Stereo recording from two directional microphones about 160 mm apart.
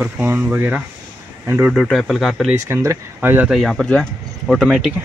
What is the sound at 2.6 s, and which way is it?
Speech, 20° right (ahead or behind).